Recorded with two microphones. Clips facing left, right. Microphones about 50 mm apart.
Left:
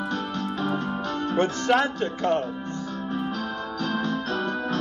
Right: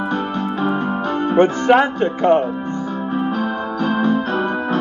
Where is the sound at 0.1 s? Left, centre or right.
Right.